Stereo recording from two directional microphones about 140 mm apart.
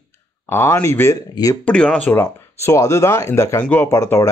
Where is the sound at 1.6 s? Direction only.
5° left (ahead or behind).